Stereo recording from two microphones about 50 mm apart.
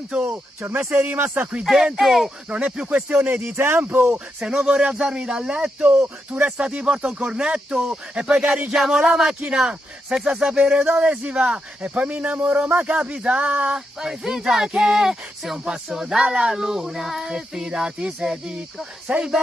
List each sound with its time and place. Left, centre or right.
0.1 s a man's voice: right
0.6 s speech: right
1.6 s speech: centre
2.5 s a man's voice: centre
3.1 s speech: right
3.5 s speech: right
3.9 s speech: right
4.4 s a man's voice: centre
13.7 s speech: centre
19.1 s a man's voice: right